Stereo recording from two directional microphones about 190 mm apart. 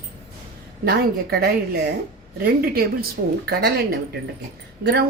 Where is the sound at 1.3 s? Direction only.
60° right (ahead or behind).